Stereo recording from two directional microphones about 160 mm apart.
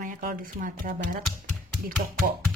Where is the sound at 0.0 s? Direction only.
55° right (ahead or behind).